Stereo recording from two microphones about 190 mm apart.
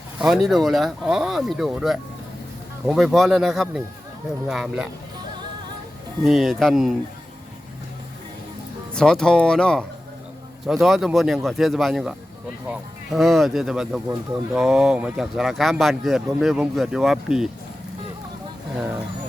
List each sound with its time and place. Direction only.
0.2 s speech: centre (ahead or behind)
6.2 s speech: centre (ahead or behind)
9.0 s speech: 5° left (ahead or behind)